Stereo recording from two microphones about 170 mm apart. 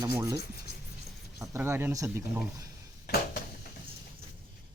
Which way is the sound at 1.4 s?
15° right (ahead or behind).